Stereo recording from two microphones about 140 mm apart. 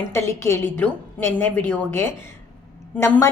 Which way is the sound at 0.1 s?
20° left (ahead or behind).